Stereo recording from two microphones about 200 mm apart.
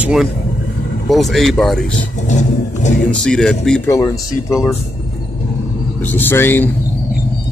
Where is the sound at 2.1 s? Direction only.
35° left (ahead or behind).